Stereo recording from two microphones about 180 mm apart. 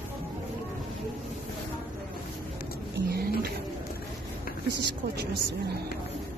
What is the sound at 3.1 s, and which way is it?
Pigeon, 60° right (ahead or behind).